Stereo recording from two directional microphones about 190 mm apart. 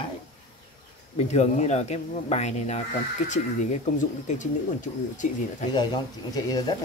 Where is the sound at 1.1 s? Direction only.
35° left (ahead or behind).